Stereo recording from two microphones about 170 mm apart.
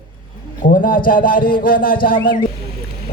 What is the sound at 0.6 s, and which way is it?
A man's voice, 55° left (ahead or behind).